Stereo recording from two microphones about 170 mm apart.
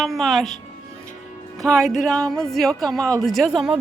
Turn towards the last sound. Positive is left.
turn(degrees=0)  # may be behind; listen again after turning